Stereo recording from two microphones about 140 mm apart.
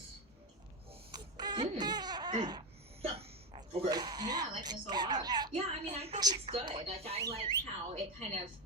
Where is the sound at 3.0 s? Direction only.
45° right (ahead or behind).